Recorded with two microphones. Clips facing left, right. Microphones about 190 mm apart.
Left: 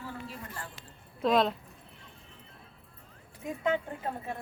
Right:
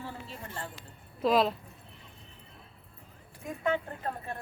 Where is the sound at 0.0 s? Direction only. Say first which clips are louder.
Left 1 dB; 25° right (ahead or behind).